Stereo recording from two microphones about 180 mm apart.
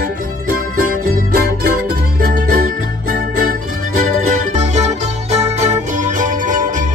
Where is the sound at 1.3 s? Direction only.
55° right (ahead or behind).